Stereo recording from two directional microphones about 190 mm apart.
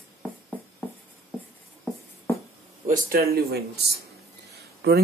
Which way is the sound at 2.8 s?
45° right (ahead or behind).